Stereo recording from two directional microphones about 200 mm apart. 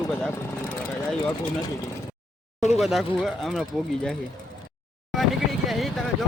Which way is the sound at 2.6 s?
35° left (ahead or behind).